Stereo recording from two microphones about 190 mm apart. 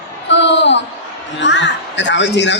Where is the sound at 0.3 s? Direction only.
65° left (ahead or behind).